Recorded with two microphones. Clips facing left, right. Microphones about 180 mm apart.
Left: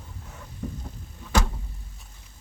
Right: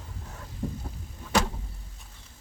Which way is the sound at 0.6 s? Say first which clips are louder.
Right 1 dB; 30° right (ahead or behind).